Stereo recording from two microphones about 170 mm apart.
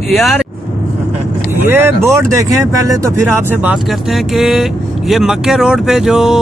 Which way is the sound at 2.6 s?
20° right (ahead or behind).